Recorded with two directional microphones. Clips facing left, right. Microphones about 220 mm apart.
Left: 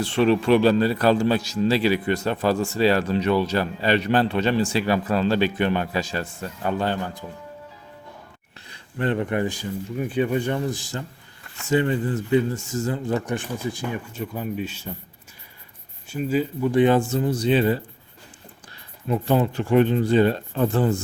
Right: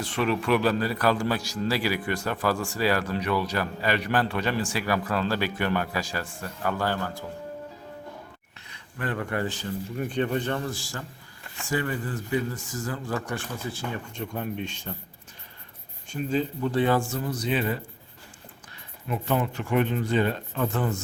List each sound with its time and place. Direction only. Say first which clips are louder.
0.0 s a man's voice: left 7 dB; 30° left (ahead or behind)
8.7 s a man's voice: left 7 dB; 25° left (ahead or behind); by 14.9 s 5° left (ahead or behind)
16.0 s a man's voice: left 3 dB; 5° left (ahead or behind); by 17.7 s 30° left (ahead or behind)
19.0 s speech: left 6 dB; 30° left (ahead or behind)